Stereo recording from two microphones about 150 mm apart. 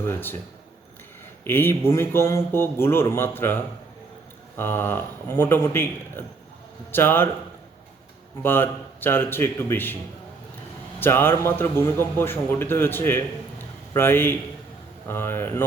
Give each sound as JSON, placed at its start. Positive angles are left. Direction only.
{"t": 0.1, "sound": "a man's voice", "side_deg": 15}
{"t": 1.5, "sound": "a man's voice", "side_deg": 15}
{"t": 8.4, "sound": "a man's voice", "side_deg": 15}
{"t": 11.0, "sound": "a man's voice", "side_deg": 15}